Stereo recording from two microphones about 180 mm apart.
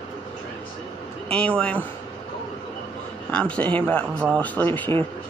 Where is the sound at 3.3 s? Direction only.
5° left (ahead or behind).